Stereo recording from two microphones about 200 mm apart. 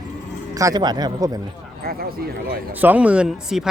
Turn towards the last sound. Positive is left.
turn(degrees=-5)  # may be behind; listen again after turning